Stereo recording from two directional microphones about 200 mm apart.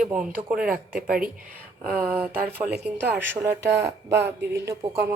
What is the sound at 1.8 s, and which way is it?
Speech, 5° right (ahead or behind).